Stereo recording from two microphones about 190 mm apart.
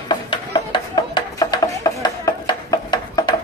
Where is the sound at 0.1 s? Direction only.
25° left (ahead or behind).